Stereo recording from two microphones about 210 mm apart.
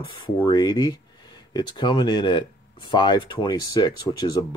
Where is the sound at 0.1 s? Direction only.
20° left (ahead or behind).